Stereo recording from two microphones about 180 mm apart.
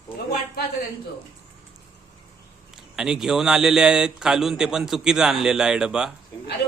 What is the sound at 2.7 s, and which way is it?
Speech, 5° right (ahead or behind).